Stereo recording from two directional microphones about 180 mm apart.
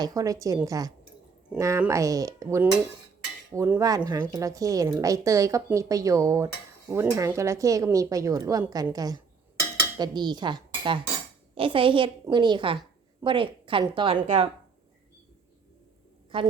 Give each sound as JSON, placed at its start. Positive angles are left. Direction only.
{"t": 0.0, "sound": "a woman's voice", "side_deg": -20}
{"t": 16.3, "sound": "a woman's voice", "side_deg": -30}